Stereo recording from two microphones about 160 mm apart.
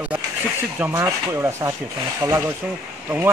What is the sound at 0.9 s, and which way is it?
Speech, 20° right (ahead or behind).